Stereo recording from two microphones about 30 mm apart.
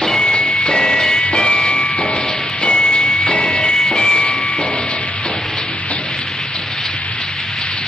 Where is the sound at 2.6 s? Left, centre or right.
Left.